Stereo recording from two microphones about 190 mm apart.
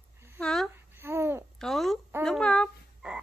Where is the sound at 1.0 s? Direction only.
15° right (ahead or behind).